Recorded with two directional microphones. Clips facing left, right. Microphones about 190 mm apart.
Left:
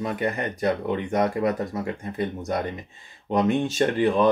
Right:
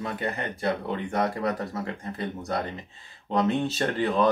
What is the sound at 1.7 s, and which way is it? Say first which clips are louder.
Speech: left 3 dB; 15° left (ahead or behind).